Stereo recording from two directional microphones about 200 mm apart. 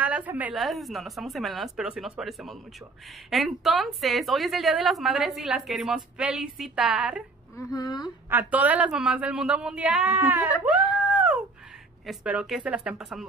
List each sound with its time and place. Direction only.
0.0 s a woman's voice: 10° right (ahead or behind)
7.5 s speech: 20° left (ahead or behind)
8.3 s a woman's voice: 10° right (ahead or behind)